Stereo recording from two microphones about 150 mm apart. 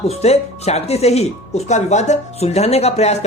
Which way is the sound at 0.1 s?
45° left (ahead or behind).